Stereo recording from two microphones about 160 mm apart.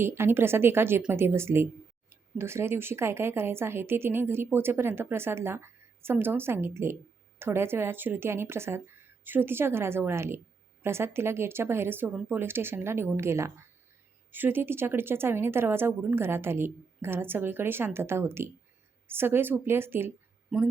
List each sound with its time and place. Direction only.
0.0 s speech: 15° right (ahead or behind)